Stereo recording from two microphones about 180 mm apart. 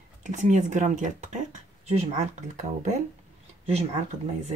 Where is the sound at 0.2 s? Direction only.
40° right (ahead or behind).